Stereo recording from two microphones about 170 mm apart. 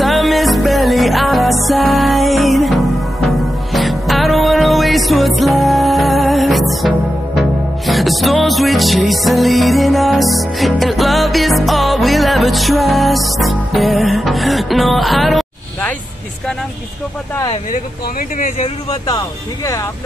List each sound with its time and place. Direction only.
0.0 s music: centre (ahead or behind)
18.6 s speech: 30° left (ahead or behind)